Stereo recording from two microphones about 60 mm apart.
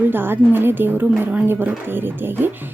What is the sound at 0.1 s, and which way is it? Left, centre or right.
A woman's voice, right.